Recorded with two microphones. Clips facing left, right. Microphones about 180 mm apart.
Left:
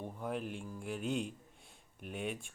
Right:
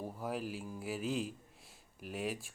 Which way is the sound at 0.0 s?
5° right (ahead or behind).